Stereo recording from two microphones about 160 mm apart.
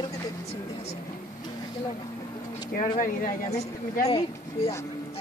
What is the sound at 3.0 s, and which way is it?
Speech, 60° left (ahead or behind).